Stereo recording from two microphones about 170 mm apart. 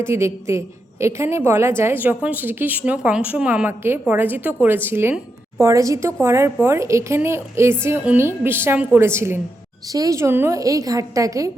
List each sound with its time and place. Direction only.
0.0 s a woman's voice: 15° right (ahead or behind)